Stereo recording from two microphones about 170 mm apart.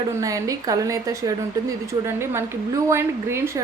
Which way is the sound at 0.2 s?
20° right (ahead or behind).